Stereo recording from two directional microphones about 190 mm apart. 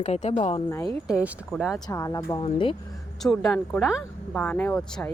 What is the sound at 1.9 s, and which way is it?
Speech, 20° left (ahead or behind).